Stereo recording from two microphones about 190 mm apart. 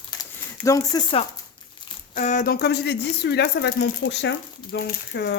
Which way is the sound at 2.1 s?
40° left (ahead or behind).